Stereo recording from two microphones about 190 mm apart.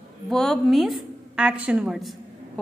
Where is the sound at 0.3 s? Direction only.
Centre (ahead or behind).